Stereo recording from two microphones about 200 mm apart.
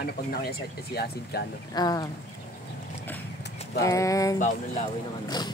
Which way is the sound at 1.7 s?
20° left (ahead or behind).